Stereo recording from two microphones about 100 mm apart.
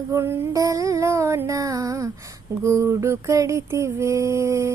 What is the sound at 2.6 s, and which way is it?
Mantra, 30° right (ahead or behind).